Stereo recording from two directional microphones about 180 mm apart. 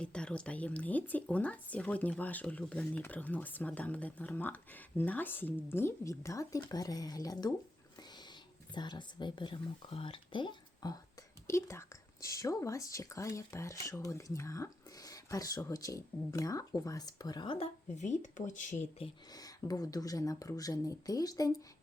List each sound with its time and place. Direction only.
0.0 s speech: 5° left (ahead or behind); by 7.5 s 20° left (ahead or behind)
7.9 s whispering: 25° left (ahead or behind)
8.7 s speech: 25° left (ahead or behind)
17.9 s speech: 45° left (ahead or behind)
18.9 s speech: 25° left (ahead or behind)